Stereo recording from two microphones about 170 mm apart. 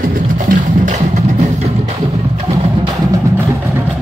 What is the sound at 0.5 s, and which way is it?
Music, 45° right (ahead or behind).